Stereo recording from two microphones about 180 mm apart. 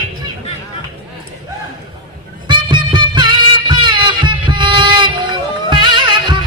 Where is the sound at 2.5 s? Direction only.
25° right (ahead or behind).